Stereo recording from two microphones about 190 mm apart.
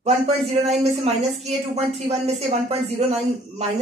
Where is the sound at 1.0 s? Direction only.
35° right (ahead or behind).